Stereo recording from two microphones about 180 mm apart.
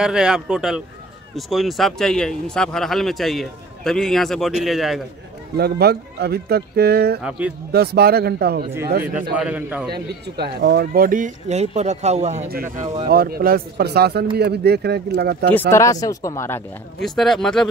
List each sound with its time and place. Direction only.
0.0 s speech: 5° right (ahead or behind)
5.6 s speech: 60° right (ahead or behind)
7.2 s a man's voice: 10° right (ahead or behind)
7.7 s speech: 60° right (ahead or behind)
9.4 s a man's voice: 10° right (ahead or behind)
9.8 s speech: 65° right (ahead or behind); by 12.4 s 40° right (ahead or behind)
13.1 s speech: 55° right (ahead or behind)
15.7 s speech: 20° left (ahead or behind)
17.0 s speech: centre (ahead or behind)